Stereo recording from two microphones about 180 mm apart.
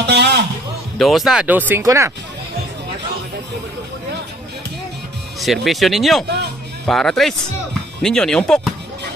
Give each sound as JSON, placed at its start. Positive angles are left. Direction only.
{"t": 0.0, "sound": "a sound", "side_deg": -70}
{"t": 0.9, "sound": "speech", "side_deg": 0}
{"t": 1.7, "sound": "speech", "side_deg": -15}
{"t": 5.4, "sound": "speech", "side_deg": 0}